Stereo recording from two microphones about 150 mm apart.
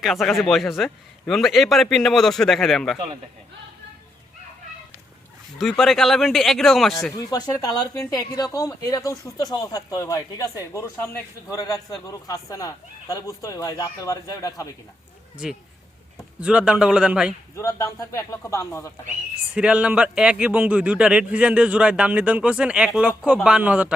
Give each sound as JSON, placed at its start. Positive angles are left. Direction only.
{"t": 0.0, "sound": "a man's voice", "side_deg": 0}
{"t": 5.5, "sound": "a man's voice", "side_deg": 0}
{"t": 7.3, "sound": "a man's voice", "side_deg": 25}
{"t": 15.4, "sound": "a man's voice", "side_deg": -5}
{"t": 17.5, "sound": "a man's voice", "side_deg": 20}
{"t": 19.5, "sound": "a man's voice", "side_deg": -5}